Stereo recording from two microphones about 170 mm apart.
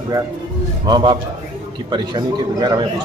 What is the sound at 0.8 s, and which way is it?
A man's voice, 25° right (ahead or behind).